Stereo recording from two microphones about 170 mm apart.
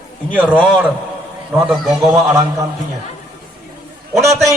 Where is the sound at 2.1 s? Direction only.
15° right (ahead or behind).